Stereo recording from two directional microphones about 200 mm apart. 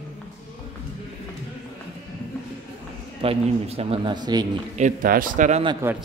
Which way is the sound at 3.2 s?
30° right (ahead or behind).